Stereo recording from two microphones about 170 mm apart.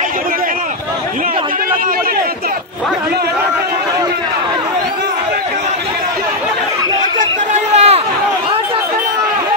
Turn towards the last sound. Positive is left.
turn(degrees=-40)  # may be behind; listen again after turning